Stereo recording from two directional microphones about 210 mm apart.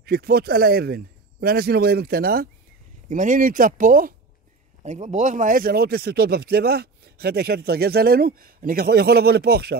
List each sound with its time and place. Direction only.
0.0 s speech: 45° right (ahead or behind)